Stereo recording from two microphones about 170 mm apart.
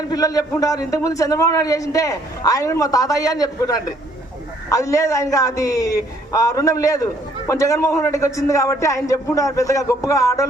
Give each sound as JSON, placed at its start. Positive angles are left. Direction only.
{"t": 0.1, "sound": "a man's voice", "side_deg": 20}